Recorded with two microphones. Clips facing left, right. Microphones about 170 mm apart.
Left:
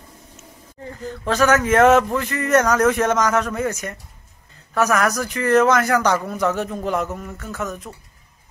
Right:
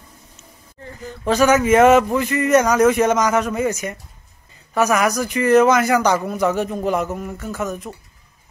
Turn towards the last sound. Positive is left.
turn(degrees=-10)  # may be behind; listen again after turning